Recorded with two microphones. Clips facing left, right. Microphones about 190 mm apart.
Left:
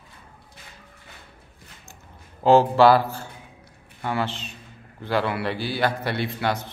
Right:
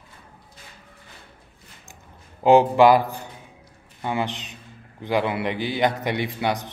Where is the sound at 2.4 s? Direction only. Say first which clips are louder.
Right 1 dB; 15° right (ahead or behind).